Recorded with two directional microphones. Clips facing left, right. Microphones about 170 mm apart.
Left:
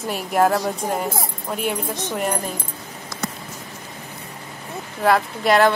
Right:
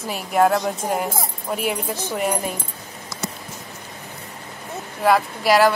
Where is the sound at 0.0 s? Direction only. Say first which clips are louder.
Even; centre (ahead or behind).